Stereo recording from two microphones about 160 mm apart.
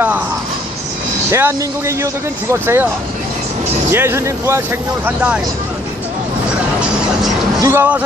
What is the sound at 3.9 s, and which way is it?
Speech, 15° right (ahead or behind).